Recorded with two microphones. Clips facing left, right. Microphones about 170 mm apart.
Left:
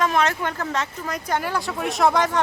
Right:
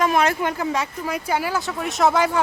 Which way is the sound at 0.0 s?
10° right (ahead or behind).